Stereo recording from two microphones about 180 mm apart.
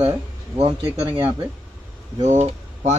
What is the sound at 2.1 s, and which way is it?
Speech, 35° right (ahead or behind).